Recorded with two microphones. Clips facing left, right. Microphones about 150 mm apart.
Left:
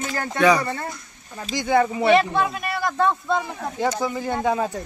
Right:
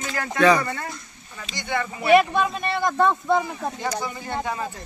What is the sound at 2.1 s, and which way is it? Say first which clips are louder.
Speech: right 5 dB; 20° right (ahead or behind).